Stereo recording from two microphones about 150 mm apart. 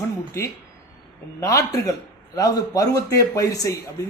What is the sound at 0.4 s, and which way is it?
A woman's voice, 20° left (ahead or behind).